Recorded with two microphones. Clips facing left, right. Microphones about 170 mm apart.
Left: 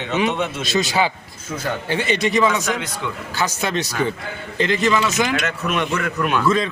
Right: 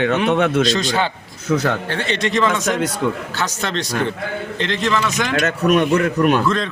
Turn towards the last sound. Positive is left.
turn(degrees=-40)  # may be behind; listen again after turning